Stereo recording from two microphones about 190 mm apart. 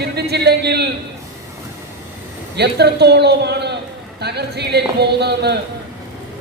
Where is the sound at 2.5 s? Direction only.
60° right (ahead or behind).